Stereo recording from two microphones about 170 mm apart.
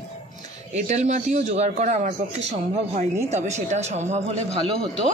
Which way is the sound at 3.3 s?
40° right (ahead or behind).